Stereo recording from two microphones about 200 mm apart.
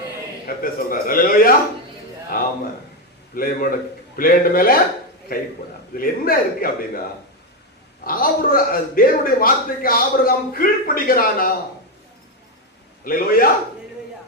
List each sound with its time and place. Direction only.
0.4 s a man's voice: 45° left (ahead or behind)
2.3 s a sound: 45° left (ahead or behind)
3.3 s a man's voice: 45° left (ahead or behind)
6.0 s a man's voice: 45° left (ahead or behind)
8.0 s a man's voice: 45° left (ahead or behind)
13.1 s a man's voice: 45° left (ahead or behind)